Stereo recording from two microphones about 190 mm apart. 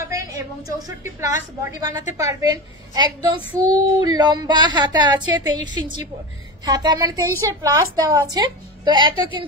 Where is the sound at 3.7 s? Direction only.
20° right (ahead or behind).